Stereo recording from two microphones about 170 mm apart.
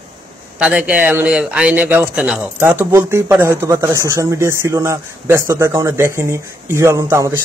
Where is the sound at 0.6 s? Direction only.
5° right (ahead or behind).